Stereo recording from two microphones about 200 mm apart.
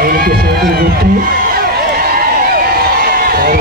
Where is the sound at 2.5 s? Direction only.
50° right (ahead or behind).